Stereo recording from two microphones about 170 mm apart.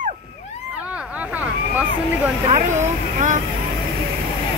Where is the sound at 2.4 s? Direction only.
45° right (ahead or behind).